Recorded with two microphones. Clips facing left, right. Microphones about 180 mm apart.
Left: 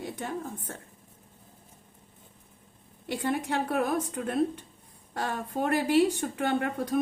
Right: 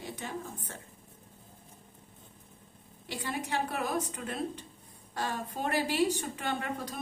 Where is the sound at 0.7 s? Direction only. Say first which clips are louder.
Left 5 dB; 50° left (ahead or behind).